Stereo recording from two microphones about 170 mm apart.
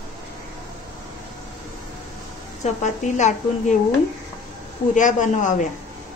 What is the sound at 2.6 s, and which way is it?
A woman's voice, 45° left (ahead or behind).